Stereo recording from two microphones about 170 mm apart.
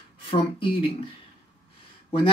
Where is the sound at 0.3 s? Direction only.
30° left (ahead or behind).